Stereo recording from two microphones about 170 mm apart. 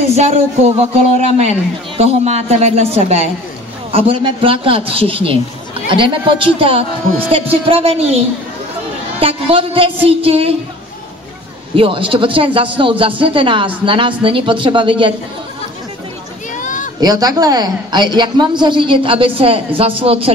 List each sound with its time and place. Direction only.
0.1 s a man's voice: 40° right (ahead or behind)
9.2 s a man's voice: 35° right (ahead or behind)
11.7 s a man's voice: 30° right (ahead or behind)
16.5 s children playing: 50° left (ahead or behind)
17.0 s a woman's voice: 25° right (ahead or behind)